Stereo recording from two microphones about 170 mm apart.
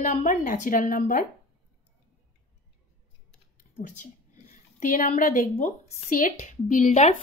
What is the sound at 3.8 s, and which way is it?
Speech, 50° left (ahead or behind).